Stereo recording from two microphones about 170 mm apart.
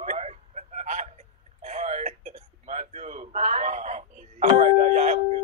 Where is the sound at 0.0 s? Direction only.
40° right (ahead or behind).